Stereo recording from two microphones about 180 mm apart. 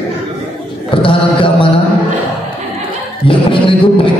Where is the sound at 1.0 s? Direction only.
30° left (ahead or behind).